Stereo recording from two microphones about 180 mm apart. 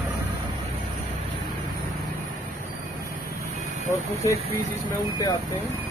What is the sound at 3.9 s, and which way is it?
Speech, 15° left (ahead or behind).